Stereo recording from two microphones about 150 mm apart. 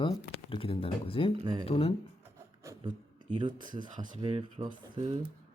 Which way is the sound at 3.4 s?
30° right (ahead or behind).